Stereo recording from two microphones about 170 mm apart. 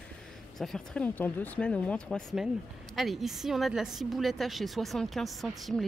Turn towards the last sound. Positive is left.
turn(degrees=0)  # may be behind; listen again after turning